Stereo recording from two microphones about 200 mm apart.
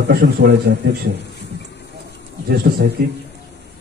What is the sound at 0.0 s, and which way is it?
A man's voice, 55° right (ahead or behind).